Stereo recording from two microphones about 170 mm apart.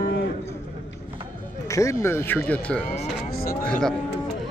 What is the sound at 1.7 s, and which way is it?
Speech, 20° left (ahead or behind).